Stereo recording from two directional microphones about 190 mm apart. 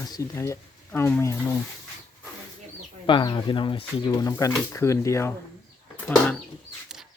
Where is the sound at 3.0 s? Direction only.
25° left (ahead or behind).